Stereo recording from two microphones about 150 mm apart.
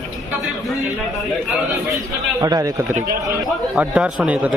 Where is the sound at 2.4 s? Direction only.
25° right (ahead or behind).